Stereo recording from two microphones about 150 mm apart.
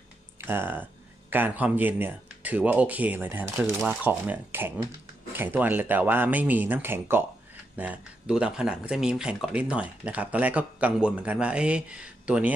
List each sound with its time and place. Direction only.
0.5 s speech: 15° right (ahead or behind)